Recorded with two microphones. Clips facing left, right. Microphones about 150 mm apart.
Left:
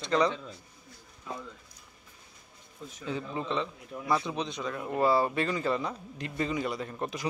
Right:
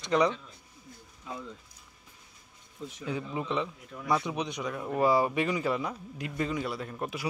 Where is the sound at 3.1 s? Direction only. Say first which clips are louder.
Even; 10° right (ahead or behind).